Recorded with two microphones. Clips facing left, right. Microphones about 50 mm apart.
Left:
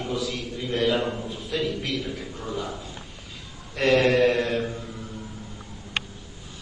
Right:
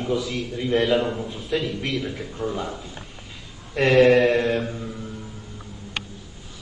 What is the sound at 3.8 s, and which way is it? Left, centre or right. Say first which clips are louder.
Speech: right 4 dB; centre.